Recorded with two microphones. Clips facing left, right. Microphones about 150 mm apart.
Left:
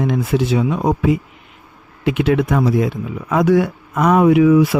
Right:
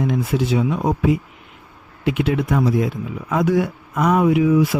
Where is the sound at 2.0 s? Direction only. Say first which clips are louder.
Left 4 dB; 90° left; by 4.8 s 70° left (ahead or behind).